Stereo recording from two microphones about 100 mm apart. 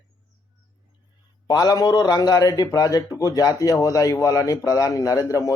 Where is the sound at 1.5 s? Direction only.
40° left (ahead or behind).